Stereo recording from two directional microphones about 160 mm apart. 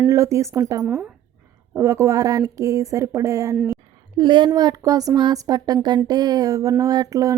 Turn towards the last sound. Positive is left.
turn(degrees=-20)  # may be behind; listen again after turning